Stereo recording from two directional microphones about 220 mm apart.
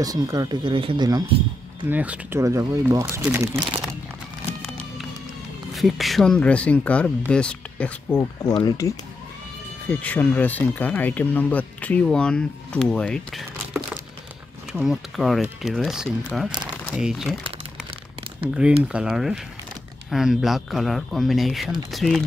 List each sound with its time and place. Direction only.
0.0 s speech: 15° right (ahead or behind)
1.9 s speech: 10° right (ahead or behind)
5.8 s speech: centre (ahead or behind)
18.9 s speech: 5° right (ahead or behind)